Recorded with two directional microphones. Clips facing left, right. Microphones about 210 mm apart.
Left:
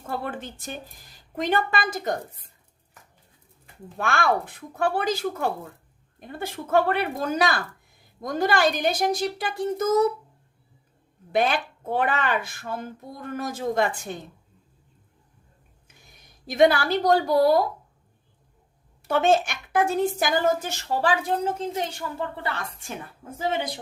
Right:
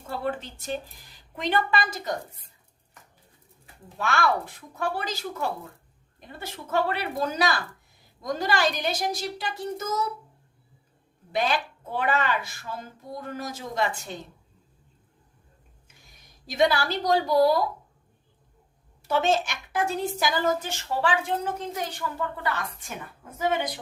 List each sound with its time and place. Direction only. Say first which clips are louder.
1.4 s a woman's voice: left 1 dB; 45° left (ahead or behind)
3.9 s a woman's voice: left 1 dB; 50° left (ahead or behind)
11.3 s a woman's voice: left 3 dB; 55° left (ahead or behind)
16.5 s a woman's voice: left 4 dB; 50° left (ahead or behind)
19.0 s a woman's voice: left 3 dB; 55° left (ahead or behind); by 21.3 s 40° left (ahead or behind)
21.4 s a woman's voice: left 4 dB; 25° left (ahead or behind)